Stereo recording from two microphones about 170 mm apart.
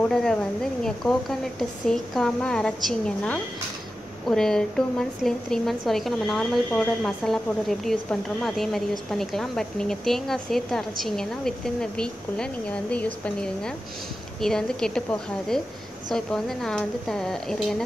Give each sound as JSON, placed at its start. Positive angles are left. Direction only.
{"t": 0.1, "sound": "speech", "side_deg": 5}